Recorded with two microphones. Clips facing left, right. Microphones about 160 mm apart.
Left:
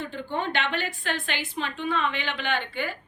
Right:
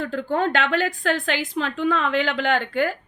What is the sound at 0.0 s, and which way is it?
A woman's voice, 90° right.